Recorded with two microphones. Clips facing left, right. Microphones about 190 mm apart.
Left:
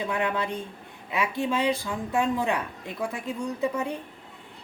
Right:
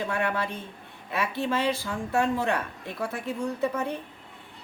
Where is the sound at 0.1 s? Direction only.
15° left (ahead or behind).